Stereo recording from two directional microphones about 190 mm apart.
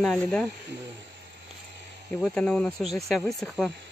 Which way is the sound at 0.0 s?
5° left (ahead or behind).